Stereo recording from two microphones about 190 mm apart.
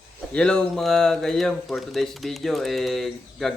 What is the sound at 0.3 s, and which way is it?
Speech, 5° left (ahead or behind).